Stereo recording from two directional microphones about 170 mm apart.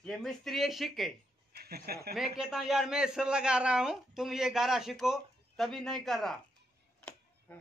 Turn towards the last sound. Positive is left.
turn(degrees=0)  # may be behind; listen again after turning